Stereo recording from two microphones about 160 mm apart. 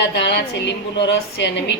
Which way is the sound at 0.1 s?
90° left.